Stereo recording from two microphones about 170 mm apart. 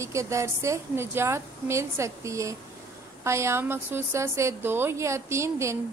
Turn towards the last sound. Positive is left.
turn(degrees=-15)  # may be behind; listen again after turning